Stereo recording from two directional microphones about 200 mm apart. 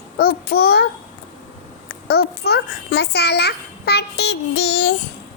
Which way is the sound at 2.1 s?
55° left (ahead or behind).